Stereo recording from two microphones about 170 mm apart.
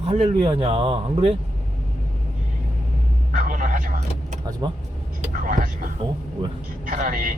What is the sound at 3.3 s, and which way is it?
Vehicle, 50° right (ahead or behind).